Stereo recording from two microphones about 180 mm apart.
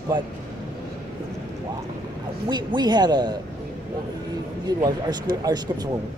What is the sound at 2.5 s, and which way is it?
Speech, 25° right (ahead or behind).